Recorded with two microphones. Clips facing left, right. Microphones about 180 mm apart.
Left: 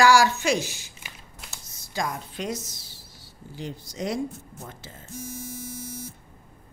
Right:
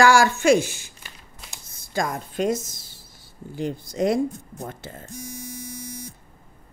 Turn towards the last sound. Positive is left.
turn(degrees=5)  # may be behind; listen again after turning